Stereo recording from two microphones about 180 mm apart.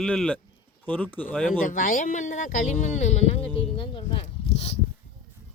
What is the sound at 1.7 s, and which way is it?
Speech, 50° left (ahead or behind).